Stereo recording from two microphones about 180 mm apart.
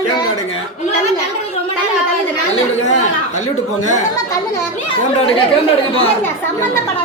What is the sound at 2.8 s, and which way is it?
A man's voice, 40° left (ahead or behind).